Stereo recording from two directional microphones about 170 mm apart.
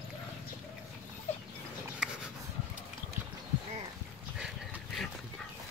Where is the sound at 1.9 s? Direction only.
5° right (ahead or behind).